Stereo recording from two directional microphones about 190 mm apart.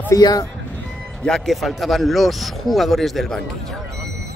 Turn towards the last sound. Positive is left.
turn(degrees=0)  # may be behind; listen again after turning